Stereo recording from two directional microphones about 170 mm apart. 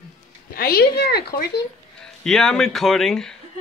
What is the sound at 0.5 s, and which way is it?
Speech, 65° left (ahead or behind).